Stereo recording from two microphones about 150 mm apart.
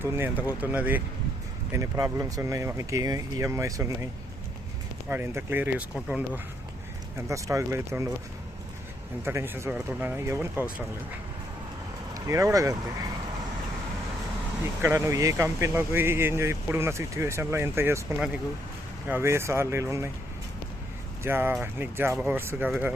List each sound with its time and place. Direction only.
0.0 s speech: 15° right (ahead or behind)
7.2 s speech: 20° right (ahead or behind)
9.2 s speech: 15° right (ahead or behind)
12.1 s speech: 20° right (ahead or behind)
14.8 s speech: 20° right (ahead or behind)
19.0 s speech: 15° right (ahead or behind)
21.2 s speech: 15° right (ahead or behind)